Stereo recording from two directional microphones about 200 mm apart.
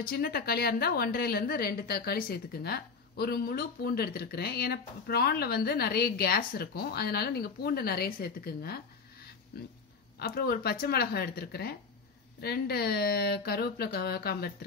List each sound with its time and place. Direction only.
0.0 s a woman's voice: 50° left (ahead or behind)
10.1 s a woman's voice: 50° left (ahead or behind)